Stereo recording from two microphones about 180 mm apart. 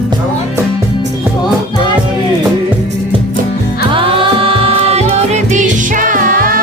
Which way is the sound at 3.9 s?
30° right (ahead or behind).